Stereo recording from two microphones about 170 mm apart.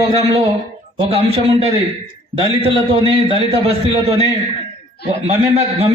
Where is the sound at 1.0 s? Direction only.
35° right (ahead or behind).